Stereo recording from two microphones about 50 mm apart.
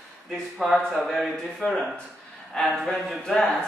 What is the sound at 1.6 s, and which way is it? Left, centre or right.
Speech, left.